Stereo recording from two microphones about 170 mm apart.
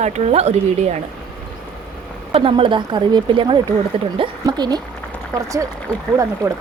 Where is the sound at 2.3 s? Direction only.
30° right (ahead or behind).